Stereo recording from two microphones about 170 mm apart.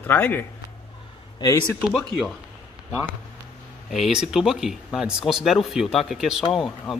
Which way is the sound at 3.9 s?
5° right (ahead or behind).